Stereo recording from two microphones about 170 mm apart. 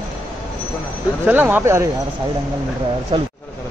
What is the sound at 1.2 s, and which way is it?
Speech, 10° right (ahead or behind).